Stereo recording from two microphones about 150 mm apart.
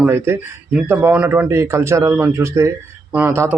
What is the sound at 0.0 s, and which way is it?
Speech, 15° right (ahead or behind).